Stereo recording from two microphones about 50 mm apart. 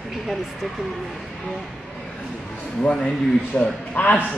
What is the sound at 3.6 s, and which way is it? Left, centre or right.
Speech, left.